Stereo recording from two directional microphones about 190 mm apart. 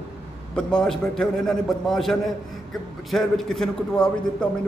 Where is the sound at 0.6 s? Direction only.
5° left (ahead or behind).